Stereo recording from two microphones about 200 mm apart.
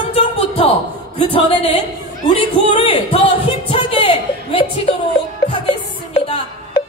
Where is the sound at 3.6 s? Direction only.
25° left (ahead or behind).